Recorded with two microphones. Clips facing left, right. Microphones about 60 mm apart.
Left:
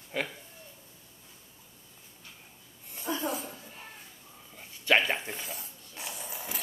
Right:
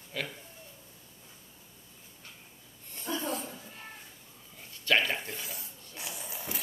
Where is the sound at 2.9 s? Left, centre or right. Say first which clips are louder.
Left 2 dB; centre.